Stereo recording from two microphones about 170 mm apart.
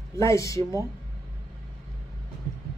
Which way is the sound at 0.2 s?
20° left (ahead or behind).